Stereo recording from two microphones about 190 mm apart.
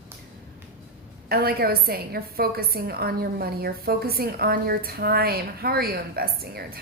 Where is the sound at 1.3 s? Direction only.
55° right (ahead or behind).